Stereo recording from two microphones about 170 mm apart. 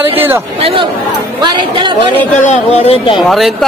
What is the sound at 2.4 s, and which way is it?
Speech, 40° left (ahead or behind).